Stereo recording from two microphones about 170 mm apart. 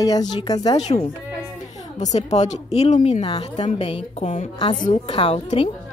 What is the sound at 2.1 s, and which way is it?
Speech, 40° left (ahead or behind).